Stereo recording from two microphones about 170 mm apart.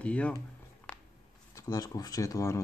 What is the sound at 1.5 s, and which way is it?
Speech, 20° left (ahead or behind).